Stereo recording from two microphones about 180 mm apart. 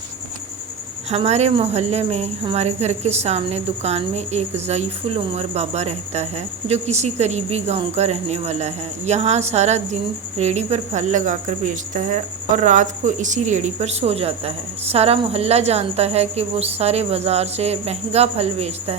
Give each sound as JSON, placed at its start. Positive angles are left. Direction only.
{"t": 1.1, "sound": "speech", "side_deg": -35}